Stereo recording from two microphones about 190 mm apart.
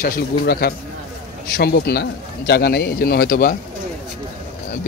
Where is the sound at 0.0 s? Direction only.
55° left (ahead or behind).